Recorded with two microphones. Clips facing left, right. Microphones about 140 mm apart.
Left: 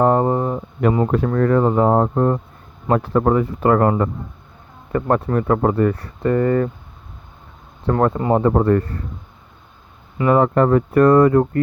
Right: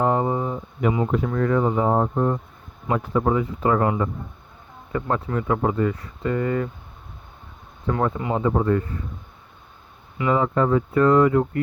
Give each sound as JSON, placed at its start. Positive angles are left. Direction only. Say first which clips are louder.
{"t": 0.0, "sound": "speech", "louder": "left 5 dB", "side_deg": 55}
{"t": 7.9, "sound": "speech", "louder": "left 6 dB", "side_deg": 55}
{"t": 10.2, "sound": "speech", "louder": "left 6 dB", "side_deg": 55}